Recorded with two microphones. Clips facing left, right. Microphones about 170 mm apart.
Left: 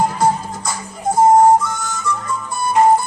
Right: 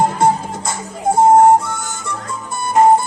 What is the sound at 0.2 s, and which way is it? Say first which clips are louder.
Music: right 2 dB; 25° right (ahead or behind).